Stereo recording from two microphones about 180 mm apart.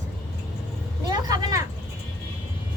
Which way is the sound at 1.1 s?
20° right (ahead or behind).